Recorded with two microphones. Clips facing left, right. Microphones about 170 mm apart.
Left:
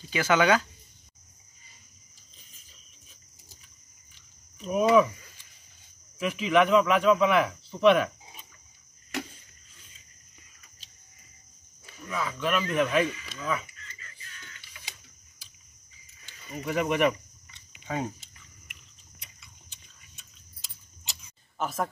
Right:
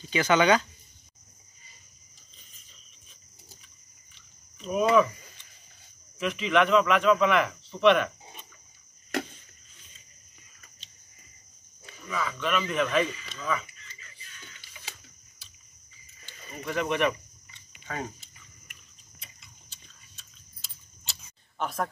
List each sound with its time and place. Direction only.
0.1 s speech: 5° left (ahead or behind)
4.1 s a sound: 5° left (ahead or behind)
6.1 s speech: 5° left (ahead or behind)
11.8 s speech: 5° left (ahead or behind)
13.7 s music: 20° right (ahead or behind)
16.6 s speech: 15° left (ahead or behind)
17.7 s a sound: 15° left (ahead or behind)
19.7 s a sound: 15° left (ahead or behind)
21.5 s speech: centre (ahead or behind)